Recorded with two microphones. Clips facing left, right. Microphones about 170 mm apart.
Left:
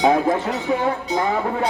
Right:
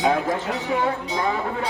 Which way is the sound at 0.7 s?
40° left (ahead or behind).